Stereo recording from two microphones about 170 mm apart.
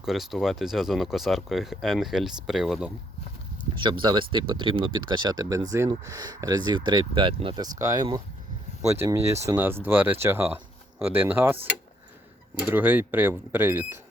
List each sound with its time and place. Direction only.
0.0 s speech: centre (ahead or behind)
3.8 s speech: 30° right (ahead or behind); by 11.5 s 10° right (ahead or behind)
12.5 s speech: 10° right (ahead or behind)